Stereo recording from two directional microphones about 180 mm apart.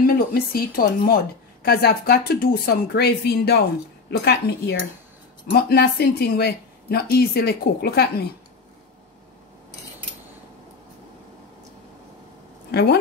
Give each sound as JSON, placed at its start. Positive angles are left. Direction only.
{"t": 0.0, "sound": "a woman's voice", "side_deg": 55}
{"t": 12.7, "sound": "a woman's voice", "side_deg": 65}